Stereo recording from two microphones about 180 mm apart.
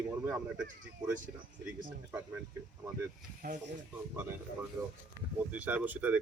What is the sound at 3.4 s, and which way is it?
Speech, 55° right (ahead or behind).